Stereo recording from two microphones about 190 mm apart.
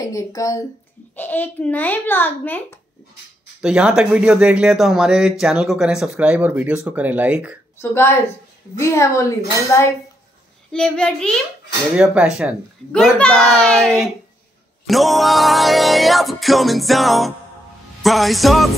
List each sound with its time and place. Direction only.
0.0 s a child's voice: 20° left (ahead or behind)
3.6 s music: 5° right (ahead or behind)
5.4 s speech: 5° right (ahead or behind)
7.8 s a child's voice: 15° left (ahead or behind)
10.7 s music: 5° left (ahead or behind)